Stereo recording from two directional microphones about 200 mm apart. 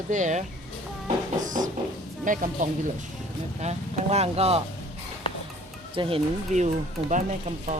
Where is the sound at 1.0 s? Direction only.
40° right (ahead or behind).